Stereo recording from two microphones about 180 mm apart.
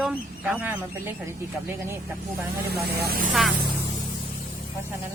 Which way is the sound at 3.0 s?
55° right (ahead or behind).